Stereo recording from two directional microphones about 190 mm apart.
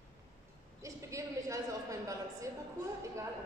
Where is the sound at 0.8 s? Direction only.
15° right (ahead or behind).